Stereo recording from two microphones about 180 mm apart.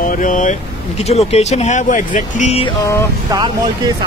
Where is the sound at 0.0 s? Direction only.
45° left (ahead or behind).